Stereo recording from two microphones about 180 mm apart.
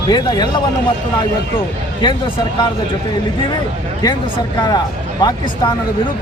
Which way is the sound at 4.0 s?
20° left (ahead or behind).